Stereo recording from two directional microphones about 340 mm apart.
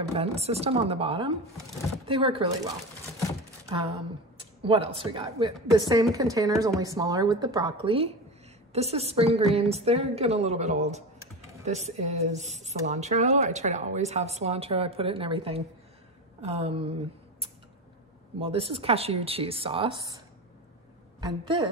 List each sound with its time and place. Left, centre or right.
0.0 s speech: centre
4.6 s speech: centre
18.4 s speech: centre
21.2 s speech: centre